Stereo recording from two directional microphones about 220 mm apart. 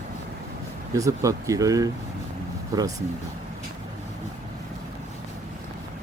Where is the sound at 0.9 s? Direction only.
15° right (ahead or behind).